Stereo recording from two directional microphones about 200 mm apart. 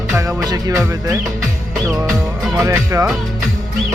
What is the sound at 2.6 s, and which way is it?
Music, 15° right (ahead or behind).